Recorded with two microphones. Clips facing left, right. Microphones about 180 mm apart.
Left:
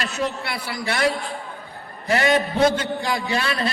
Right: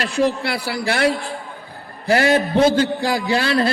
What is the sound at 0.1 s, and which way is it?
Speech, 90° right.